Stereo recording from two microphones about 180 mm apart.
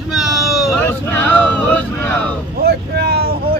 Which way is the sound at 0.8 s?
10° left (ahead or behind).